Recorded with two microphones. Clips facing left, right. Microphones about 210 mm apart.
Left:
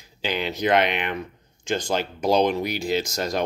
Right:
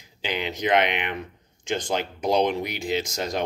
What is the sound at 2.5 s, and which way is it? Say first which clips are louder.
Speech: left 2 dB; 40° left (ahead or behind).